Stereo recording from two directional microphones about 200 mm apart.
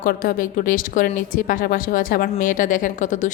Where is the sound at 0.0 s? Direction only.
45° left (ahead or behind).